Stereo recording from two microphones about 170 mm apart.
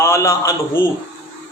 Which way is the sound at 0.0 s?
15° left (ahead or behind).